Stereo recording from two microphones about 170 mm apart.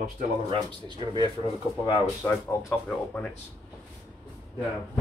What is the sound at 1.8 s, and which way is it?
Speech, 25° left (ahead or behind).